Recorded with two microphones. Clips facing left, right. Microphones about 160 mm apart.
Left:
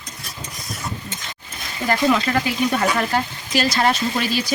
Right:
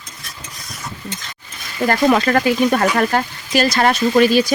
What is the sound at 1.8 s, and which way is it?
Speech, 50° right (ahead or behind).